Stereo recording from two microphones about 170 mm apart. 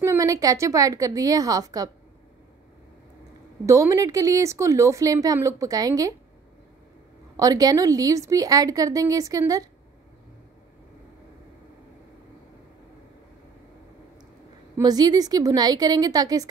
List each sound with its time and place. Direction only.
0.0 s speech: 20° right (ahead or behind)
3.6 s speech: 20° right (ahead or behind)
7.3 s speech: 20° right (ahead or behind)
14.8 s speech: 25° right (ahead or behind)